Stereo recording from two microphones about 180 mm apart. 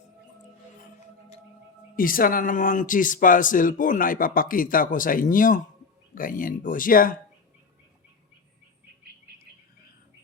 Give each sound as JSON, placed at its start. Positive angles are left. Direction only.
{"t": 2.0, "sound": "speech", "side_deg": 50}